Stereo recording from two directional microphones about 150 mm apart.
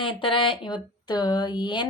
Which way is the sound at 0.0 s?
35° left (ahead or behind).